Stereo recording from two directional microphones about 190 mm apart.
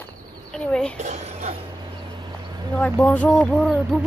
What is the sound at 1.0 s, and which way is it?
Speech, 35° right (ahead or behind).